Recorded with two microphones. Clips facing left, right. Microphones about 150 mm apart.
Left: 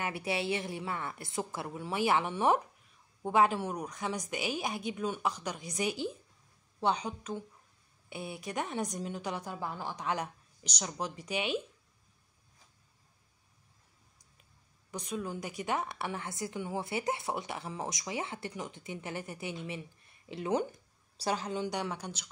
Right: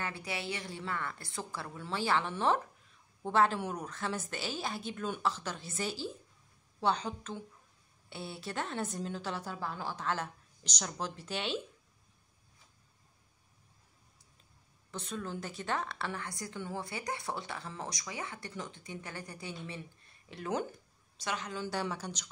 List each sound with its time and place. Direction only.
0.0 s a woman's voice: 25° left (ahead or behind)
14.9 s a woman's voice: 10° left (ahead or behind)
21.2 s a woman's voice: 35° left (ahead or behind)
21.5 s a woman's voice: 15° left (ahead or behind)